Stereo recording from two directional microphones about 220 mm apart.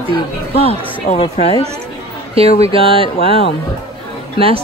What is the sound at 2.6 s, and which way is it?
Speech, 25° right (ahead or behind).